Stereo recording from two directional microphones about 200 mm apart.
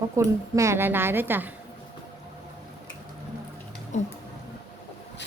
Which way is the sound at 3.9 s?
35° left (ahead or behind).